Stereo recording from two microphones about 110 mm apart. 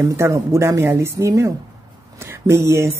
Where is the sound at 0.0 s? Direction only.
25° right (ahead or behind).